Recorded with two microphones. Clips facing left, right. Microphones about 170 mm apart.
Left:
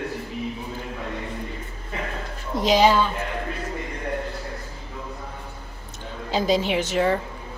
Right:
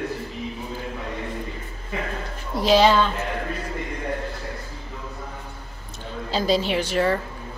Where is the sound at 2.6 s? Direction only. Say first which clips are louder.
Right 1 dB; 15° left (ahead or behind).